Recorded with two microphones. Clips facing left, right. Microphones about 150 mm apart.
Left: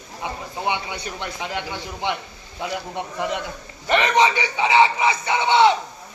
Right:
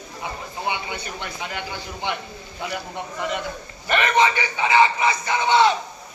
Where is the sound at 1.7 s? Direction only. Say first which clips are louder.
Left 2 dB; 25° left (ahead or behind).